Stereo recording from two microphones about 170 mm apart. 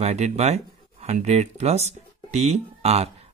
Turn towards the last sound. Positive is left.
turn(degrees=-40)  # may be behind; listen again after turning